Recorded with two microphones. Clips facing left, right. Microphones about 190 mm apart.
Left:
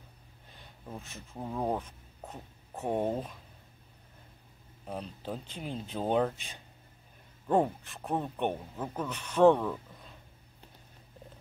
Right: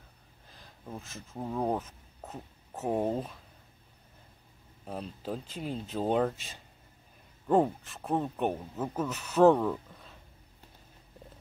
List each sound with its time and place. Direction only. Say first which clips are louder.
0.6 s speech: right 1 dB; centre (ahead or behind)
4.8 s speech: right 1 dB; 5° right (ahead or behind)